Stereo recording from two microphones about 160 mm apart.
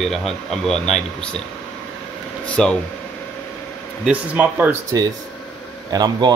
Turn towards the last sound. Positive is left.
turn(degrees=-25)  # may be behind; listen again after turning